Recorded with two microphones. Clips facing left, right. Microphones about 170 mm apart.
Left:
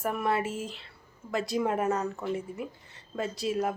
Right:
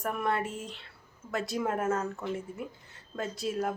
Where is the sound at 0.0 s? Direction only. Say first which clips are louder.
Left 2 dB; centre (ahead or behind).